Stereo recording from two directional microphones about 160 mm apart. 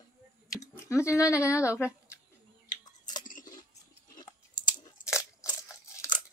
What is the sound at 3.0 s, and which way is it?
Chewing, 55° left (ahead or behind).